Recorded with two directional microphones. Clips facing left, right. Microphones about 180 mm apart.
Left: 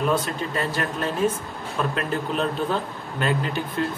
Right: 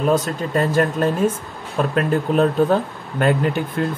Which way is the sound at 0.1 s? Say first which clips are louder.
Right 5 dB; 45° right (ahead or behind).